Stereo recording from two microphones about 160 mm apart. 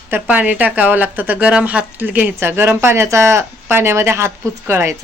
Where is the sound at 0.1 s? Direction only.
10° right (ahead or behind).